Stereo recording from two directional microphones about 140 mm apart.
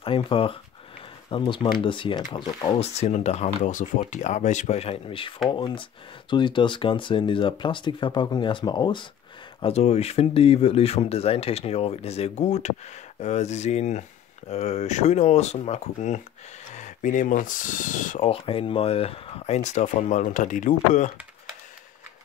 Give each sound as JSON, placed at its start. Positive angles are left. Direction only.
{"t": 0.0, "sound": "speech", "side_deg": 40}
{"t": 2.8, "sound": "speech", "side_deg": 50}
{"t": 9.6, "sound": "speech", "side_deg": 50}
{"t": 18.2, "sound": "speech", "side_deg": 45}